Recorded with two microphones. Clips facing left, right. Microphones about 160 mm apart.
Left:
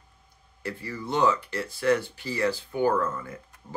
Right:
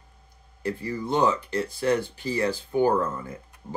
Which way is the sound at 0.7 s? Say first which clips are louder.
Right 5 dB; 15° right (ahead or behind).